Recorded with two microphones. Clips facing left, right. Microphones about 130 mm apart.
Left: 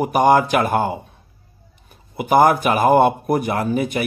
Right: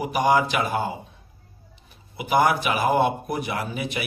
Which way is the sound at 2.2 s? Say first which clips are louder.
Left 6 dB; 45° left (ahead or behind).